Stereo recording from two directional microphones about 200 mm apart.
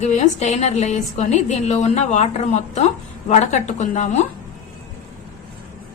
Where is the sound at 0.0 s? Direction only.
35° left (ahead or behind).